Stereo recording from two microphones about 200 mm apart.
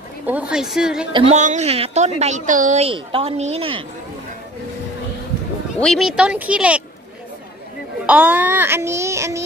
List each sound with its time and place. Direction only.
0.3 s speech: 5° right (ahead or behind)
1.1 s a woman's voice: 35° right (ahead or behind)
5.8 s speech: centre (ahead or behind)
8.1 s child singing: 5° right (ahead or behind)